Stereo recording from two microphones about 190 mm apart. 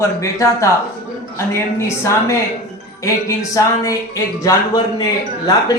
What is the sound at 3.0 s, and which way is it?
Speech, 15° left (ahead or behind).